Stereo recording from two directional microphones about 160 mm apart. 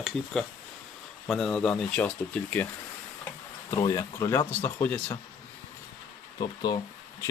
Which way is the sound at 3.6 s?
20° left (ahead or behind).